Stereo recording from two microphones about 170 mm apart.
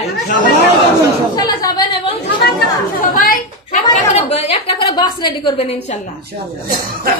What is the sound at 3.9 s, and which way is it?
A woman's voice, 40° left (ahead or behind).